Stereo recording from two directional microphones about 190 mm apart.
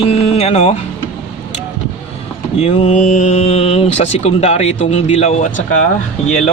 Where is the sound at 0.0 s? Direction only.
30° left (ahead or behind).